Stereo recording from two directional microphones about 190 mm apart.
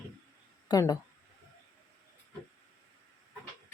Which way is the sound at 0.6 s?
20° left (ahead or behind).